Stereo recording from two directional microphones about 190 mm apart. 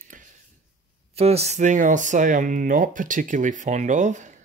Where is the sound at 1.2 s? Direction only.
35° right (ahead or behind).